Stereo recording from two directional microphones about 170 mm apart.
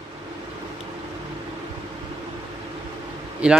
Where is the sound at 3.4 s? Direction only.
5° right (ahead or behind).